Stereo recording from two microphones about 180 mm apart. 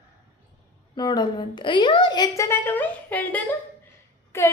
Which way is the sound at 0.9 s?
25° left (ahead or behind).